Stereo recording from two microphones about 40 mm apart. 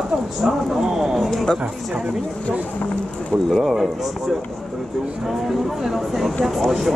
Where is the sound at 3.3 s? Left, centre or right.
Centre.